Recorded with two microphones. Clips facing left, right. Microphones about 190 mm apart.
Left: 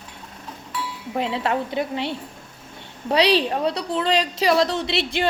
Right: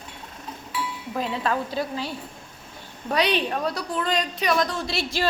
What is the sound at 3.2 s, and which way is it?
A woman's voice, 30° left (ahead or behind).